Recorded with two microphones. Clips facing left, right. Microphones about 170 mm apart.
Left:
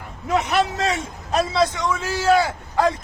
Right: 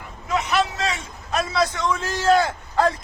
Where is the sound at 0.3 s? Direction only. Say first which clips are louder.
Left 2 dB; 50° left (ahead or behind).